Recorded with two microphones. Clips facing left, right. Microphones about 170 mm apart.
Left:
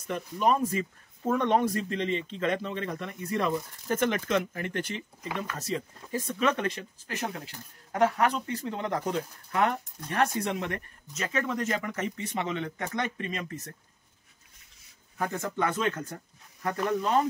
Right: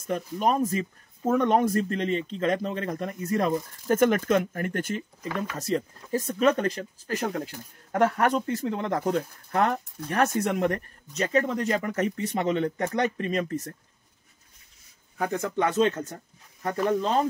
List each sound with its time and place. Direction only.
0.0 s speech: 45° right (ahead or behind)
15.1 s speech: 20° right (ahead or behind)